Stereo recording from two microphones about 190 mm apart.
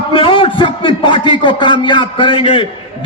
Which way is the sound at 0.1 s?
25° left (ahead or behind).